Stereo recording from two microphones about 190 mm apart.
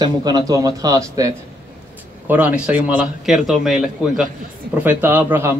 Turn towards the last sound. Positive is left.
turn(degrees=-10)  # may be behind; listen again after turning